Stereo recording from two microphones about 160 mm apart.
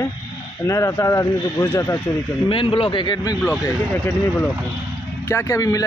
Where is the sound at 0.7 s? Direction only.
20° left (ahead or behind).